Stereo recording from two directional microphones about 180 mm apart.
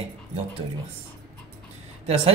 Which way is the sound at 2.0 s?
35° right (ahead or behind).